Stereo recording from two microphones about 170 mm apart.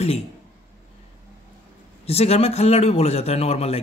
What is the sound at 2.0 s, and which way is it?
A man's voice, 35° left (ahead or behind).